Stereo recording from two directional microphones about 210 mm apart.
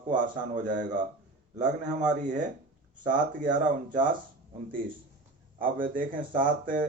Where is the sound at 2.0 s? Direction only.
35° right (ahead or behind).